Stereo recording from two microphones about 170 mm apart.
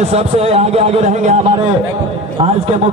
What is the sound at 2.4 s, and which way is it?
Speech, 35° right (ahead or behind).